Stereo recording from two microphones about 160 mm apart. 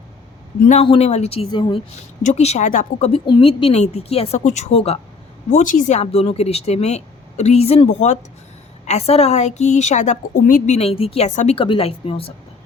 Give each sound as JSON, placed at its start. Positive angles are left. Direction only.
{"t": 0.7, "sound": "speech", "side_deg": 40}
{"t": 2.2, "sound": "a woman's voice", "side_deg": 45}
{"t": 3.2, "sound": "speech", "side_deg": 35}
{"t": 5.5, "sound": "a woman's voice", "side_deg": 55}
{"t": 10.8, "sound": "speech", "side_deg": 40}
{"t": 11.5, "sound": "speech", "side_deg": 30}